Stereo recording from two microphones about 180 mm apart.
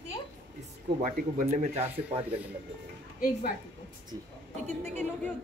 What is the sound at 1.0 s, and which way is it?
Speech, 45° right (ahead or behind).